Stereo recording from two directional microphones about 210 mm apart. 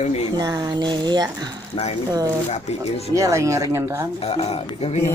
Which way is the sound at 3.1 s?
15° right (ahead or behind).